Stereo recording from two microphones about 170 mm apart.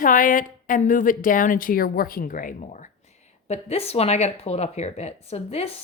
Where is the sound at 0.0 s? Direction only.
50° left (ahead or behind).